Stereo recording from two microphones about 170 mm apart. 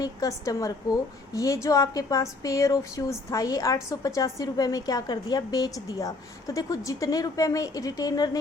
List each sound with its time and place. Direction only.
0.0 s a woman's voice: 20° left (ahead or behind)